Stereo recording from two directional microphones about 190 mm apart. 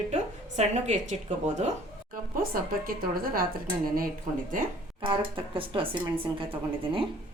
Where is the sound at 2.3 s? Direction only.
50° right (ahead or behind).